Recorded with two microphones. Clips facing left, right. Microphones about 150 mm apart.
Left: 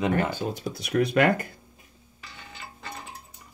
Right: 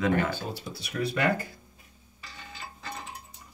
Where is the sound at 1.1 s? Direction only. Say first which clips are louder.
Left 3 dB; 65° left (ahead or behind).